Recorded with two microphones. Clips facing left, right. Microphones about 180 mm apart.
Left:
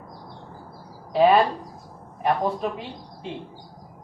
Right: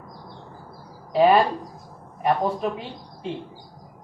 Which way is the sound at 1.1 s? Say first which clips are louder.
Even; centre (ahead or behind).